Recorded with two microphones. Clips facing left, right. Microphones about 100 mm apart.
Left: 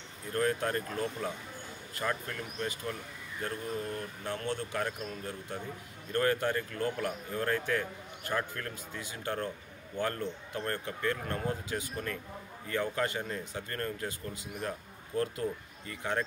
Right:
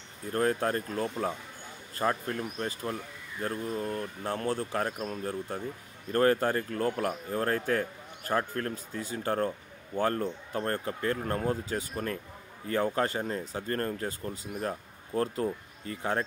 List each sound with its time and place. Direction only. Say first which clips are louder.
0.3 s speech: right 3 dB; 35° right (ahead or behind)